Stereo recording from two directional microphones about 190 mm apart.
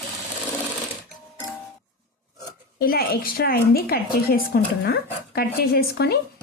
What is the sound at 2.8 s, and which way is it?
A woman's voice, 55° left (ahead or behind).